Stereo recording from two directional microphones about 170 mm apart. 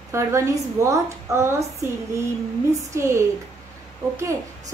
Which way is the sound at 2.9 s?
15° right (ahead or behind).